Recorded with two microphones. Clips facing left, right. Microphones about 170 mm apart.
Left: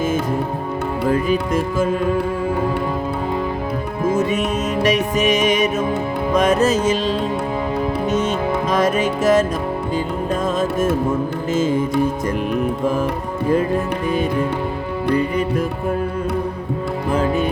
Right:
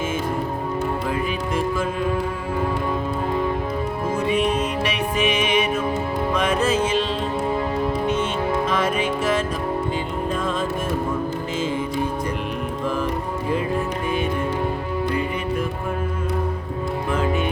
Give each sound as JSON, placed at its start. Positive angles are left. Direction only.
{"t": 1.1, "sound": "music", "side_deg": 40}
{"t": 4.1, "sound": "music", "side_deg": 45}
{"t": 8.0, "sound": "music", "side_deg": 40}
{"t": 11.5, "sound": "music", "side_deg": 45}
{"t": 17.1, "sound": "music", "side_deg": 40}